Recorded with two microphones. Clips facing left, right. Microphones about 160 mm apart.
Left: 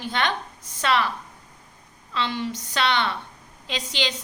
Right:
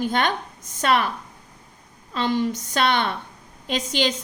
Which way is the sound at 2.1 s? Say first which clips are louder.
Right 5 dB; 45° right (ahead or behind).